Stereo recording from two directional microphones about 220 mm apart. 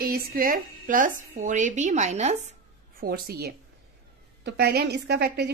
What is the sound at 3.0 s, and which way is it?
A woman's voice, 45° right (ahead or behind).